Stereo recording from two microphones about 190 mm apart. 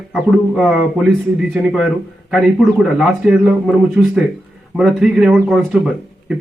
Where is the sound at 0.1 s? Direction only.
Centre (ahead or behind).